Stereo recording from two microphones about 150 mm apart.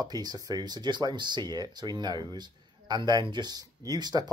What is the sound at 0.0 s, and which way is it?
Speech, 25° right (ahead or behind).